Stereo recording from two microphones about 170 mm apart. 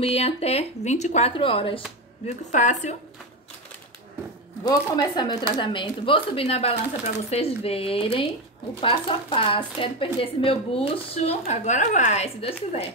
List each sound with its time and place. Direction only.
0.0 s speech: 35° left (ahead or behind)
2.2 s a woman's voice: 45° left (ahead or behind)
4.6 s speech: 25° left (ahead or behind)